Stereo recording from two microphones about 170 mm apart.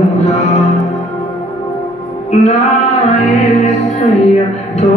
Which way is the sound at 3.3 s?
40° left (ahead or behind).